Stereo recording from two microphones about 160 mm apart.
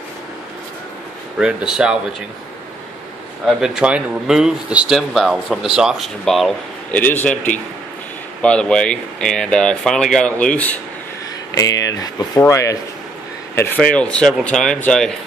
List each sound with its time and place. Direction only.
1.4 s speech: 5° right (ahead or behind)
3.4 s a man's voice: 5° right (ahead or behind)
8.4 s speech: 5° left (ahead or behind)
11.5 s a man's voice: 20° left (ahead or behind); by 15.1 s 5° left (ahead or behind)